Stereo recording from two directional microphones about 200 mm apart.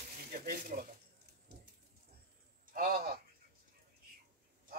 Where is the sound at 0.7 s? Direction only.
45° right (ahead or behind).